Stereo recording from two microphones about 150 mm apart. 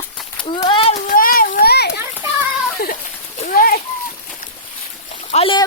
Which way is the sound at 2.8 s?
80° left.